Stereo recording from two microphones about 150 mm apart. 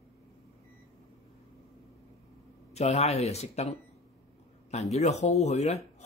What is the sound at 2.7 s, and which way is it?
Speech, 45° left (ahead or behind).